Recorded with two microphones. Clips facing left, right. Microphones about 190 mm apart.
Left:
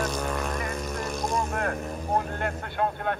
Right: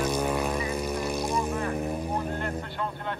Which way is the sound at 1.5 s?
55° left (ahead or behind).